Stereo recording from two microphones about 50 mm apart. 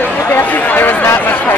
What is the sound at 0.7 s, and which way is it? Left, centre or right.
Chatter, left.